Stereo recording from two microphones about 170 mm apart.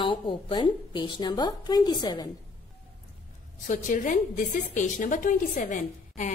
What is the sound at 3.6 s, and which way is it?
A woman's voice, 50° left (ahead or behind).